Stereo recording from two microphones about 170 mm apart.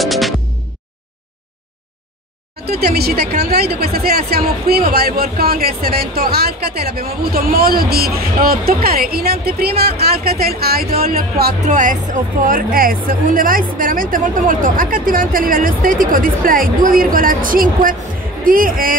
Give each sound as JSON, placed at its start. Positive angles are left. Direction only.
{"t": 0.0, "sound": "music", "side_deg": 0}
{"t": 2.6, "sound": "speech", "side_deg": -65}
{"t": 11.6, "sound": "speech", "side_deg": -45}